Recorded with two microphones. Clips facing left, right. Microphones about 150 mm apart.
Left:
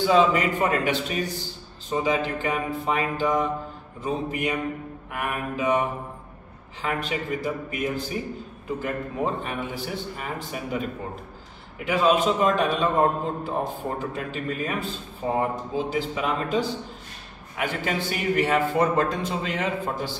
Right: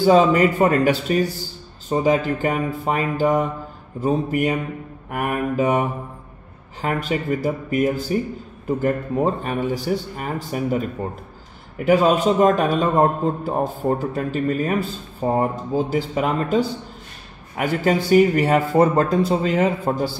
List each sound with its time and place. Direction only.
0.0 s a man's voice: 40° right (ahead or behind)
11.8 s a man's voice: 40° right (ahead or behind)